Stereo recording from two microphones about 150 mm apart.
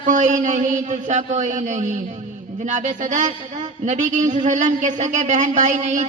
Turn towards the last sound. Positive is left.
turn(degrees=-55)  # may be behind; listen again after turning